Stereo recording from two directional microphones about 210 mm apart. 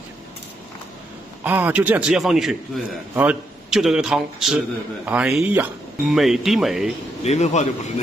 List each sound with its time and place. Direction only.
1.4 s a man's voice: 10° right (ahead or behind)
7.2 s a man's voice: 30° left (ahead or behind)